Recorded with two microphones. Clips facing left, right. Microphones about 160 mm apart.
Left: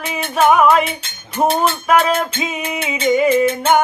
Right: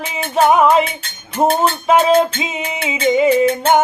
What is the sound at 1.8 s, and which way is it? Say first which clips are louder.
Music: right 5 dB; 25° right (ahead or behind).